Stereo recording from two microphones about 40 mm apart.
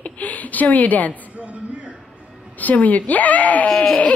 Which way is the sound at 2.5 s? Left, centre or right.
Left.